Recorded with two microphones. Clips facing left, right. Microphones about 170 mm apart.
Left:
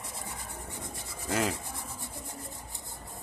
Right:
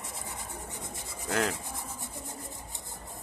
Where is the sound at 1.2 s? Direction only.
Centre (ahead or behind).